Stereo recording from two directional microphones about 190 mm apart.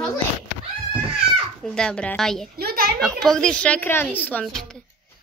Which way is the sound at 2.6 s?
55° right (ahead or behind).